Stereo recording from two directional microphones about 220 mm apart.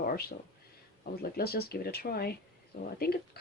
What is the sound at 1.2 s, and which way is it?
A woman's voice, 45° left (ahead or behind).